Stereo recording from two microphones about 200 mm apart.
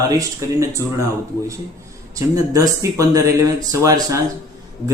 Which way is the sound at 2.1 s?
15° right (ahead or behind).